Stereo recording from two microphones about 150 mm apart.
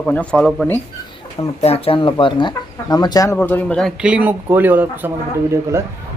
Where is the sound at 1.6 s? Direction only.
40° left (ahead or behind); by 3.3 s 25° left (ahead or behind).